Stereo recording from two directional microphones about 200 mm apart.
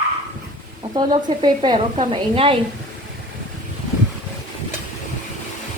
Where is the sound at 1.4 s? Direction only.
20° right (ahead or behind).